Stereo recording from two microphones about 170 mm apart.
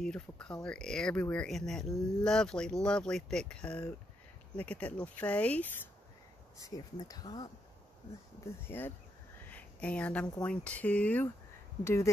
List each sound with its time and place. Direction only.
0.0 s speech: 5° left (ahead or behind)
6.6 s speech: 20° left (ahead or behind)
8.6 s speech: 10° left (ahead or behind)
9.5 s a sound: 10° left (ahead or behind)
10.4 s speech: 5° left (ahead or behind)